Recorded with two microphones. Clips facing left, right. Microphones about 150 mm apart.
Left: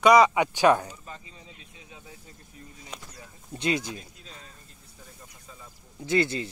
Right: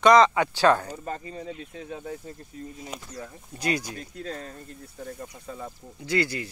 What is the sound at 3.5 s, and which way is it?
Speech, 25° left (ahead or behind).